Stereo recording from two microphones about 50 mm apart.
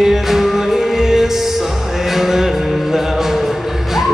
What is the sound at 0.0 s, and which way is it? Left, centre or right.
Music, centre.